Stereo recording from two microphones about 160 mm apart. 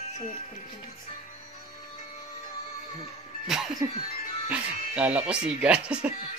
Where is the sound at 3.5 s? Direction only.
5° right (ahead or behind).